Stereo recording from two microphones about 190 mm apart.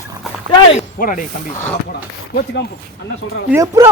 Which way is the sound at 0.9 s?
45° left (ahead or behind).